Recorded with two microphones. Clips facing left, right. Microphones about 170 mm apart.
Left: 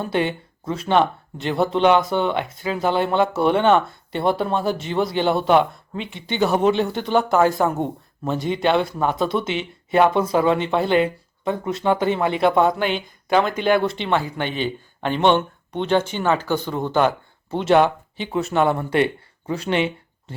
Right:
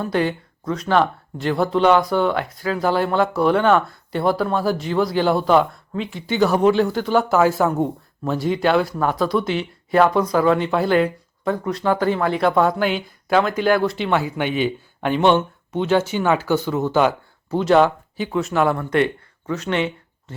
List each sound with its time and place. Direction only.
0.0 s speech: 25° left (ahead or behind)
4.6 s speech: centre (ahead or behind)
5.4 s speech: 25° left (ahead or behind)
6.0 s speech: centre (ahead or behind)
8.9 s speech: 20° left (ahead or behind)
10.6 s speech: centre (ahead or behind)
11.4 s speech: 20° left (ahead or behind)
12.6 s speech: 5° right (ahead or behind)
18.9 s speech: 30° left (ahead or behind)